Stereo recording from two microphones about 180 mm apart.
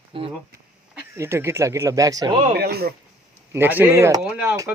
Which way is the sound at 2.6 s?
60° right (ahead or behind).